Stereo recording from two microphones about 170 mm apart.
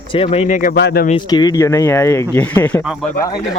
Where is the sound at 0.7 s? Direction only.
75° left (ahead or behind).